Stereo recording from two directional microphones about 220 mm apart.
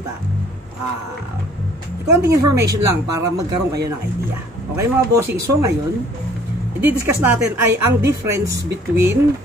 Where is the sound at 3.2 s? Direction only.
50° right (ahead or behind).